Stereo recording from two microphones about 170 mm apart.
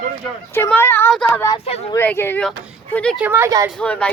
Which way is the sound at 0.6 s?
10° left (ahead or behind).